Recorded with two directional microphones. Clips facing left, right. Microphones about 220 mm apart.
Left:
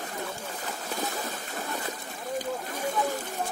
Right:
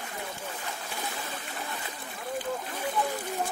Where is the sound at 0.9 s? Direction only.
40° left (ahead or behind).